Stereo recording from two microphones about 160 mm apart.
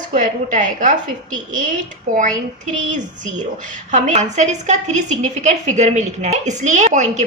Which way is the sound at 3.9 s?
50° right (ahead or behind).